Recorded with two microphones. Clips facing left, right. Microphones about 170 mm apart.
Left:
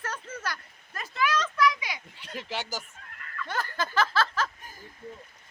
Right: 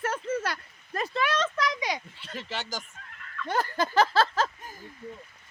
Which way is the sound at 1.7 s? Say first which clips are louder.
Right 7 dB; 40° right (ahead or behind).